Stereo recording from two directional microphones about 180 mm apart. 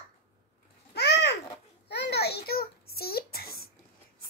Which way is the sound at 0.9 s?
65° left (ahead or behind).